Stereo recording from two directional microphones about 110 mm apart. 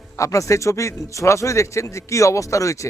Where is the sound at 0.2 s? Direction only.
30° left (ahead or behind).